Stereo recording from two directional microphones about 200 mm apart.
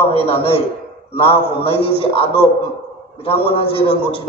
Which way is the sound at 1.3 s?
30° left (ahead or behind).